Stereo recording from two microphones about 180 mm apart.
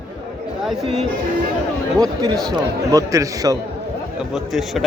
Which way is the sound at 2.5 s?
20° right (ahead or behind).